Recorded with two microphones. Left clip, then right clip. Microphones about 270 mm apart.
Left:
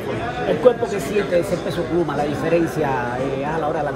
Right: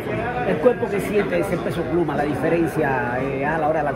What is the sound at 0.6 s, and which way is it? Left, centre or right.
Speech, centre.